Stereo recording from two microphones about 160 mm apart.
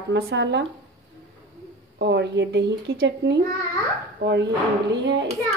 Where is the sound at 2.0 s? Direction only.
90° right.